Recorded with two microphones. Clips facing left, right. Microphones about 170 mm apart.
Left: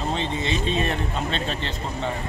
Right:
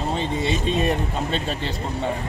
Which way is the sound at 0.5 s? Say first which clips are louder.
Even; 50° right (ahead or behind).